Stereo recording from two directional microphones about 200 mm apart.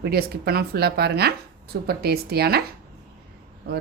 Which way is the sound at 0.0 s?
50° right (ahead or behind).